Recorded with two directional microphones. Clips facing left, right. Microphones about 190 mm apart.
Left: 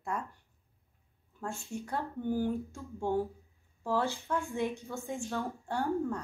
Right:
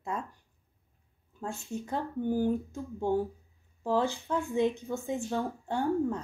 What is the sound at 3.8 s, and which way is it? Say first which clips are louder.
A woman's voice: right 3 dB; 15° right (ahead or behind).